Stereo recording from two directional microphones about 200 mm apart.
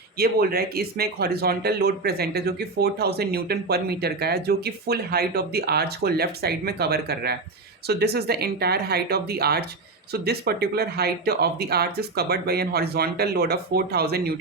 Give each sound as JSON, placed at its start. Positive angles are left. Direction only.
{"t": 0.2, "sound": "speech", "side_deg": -50}